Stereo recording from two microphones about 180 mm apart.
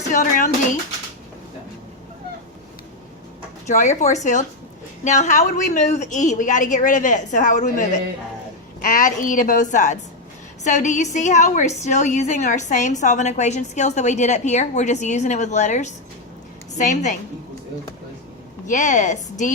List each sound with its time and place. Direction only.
0.1 s a woman's voice: 45° left (ahead or behind)
3.7 s a woman's voice: 40° left (ahead or behind)
18.7 s a woman's voice: 45° left (ahead or behind)